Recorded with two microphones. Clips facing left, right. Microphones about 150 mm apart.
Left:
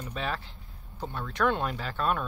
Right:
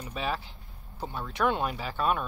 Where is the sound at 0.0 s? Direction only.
10° right (ahead or behind).